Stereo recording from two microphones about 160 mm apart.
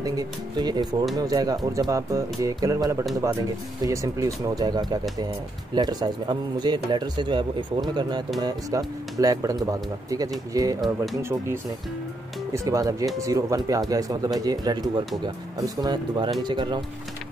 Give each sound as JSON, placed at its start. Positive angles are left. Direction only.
{"t": 0.0, "sound": "speech", "side_deg": -25}